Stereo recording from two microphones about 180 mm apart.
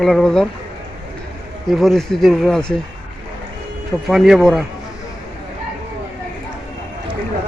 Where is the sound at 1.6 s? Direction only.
Centre (ahead or behind).